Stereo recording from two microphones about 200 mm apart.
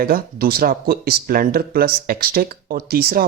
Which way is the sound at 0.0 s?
50° right (ahead or behind).